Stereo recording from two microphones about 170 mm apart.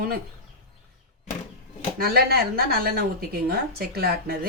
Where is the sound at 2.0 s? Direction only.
65° right (ahead or behind).